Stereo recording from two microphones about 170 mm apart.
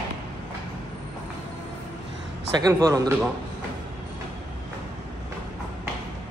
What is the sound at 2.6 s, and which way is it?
Speech, 20° right (ahead or behind).